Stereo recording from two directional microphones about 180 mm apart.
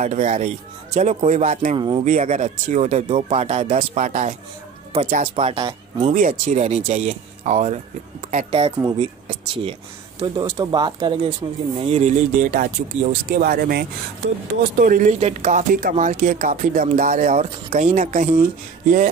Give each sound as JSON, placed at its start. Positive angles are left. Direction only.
{"t": 0.0, "sound": "speech", "side_deg": -40}
{"t": 1.8, "sound": "speech", "side_deg": -25}
{"t": 2.0, "sound": "speech", "side_deg": -40}
{"t": 6.1, "sound": "speech", "side_deg": -45}
{"t": 11.8, "sound": "speech", "side_deg": -35}